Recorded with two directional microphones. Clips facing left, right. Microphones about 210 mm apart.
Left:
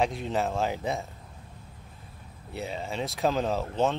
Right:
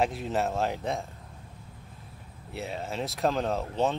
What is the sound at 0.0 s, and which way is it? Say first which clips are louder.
Speech: even; centre (ahead or behind).